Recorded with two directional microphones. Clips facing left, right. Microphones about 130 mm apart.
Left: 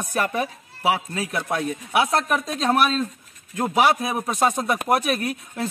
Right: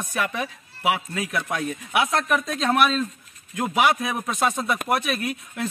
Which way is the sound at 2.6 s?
30° left (ahead or behind).